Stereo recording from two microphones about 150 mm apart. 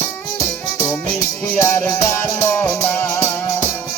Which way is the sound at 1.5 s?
15° left (ahead or behind).